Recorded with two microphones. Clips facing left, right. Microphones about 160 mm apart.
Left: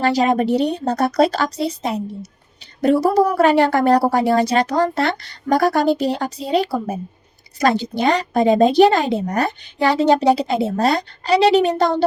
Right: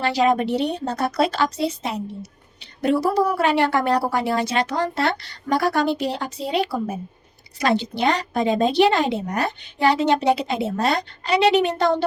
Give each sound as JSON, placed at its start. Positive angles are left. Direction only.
{"t": 0.0, "sound": "a woman's voice", "side_deg": 40}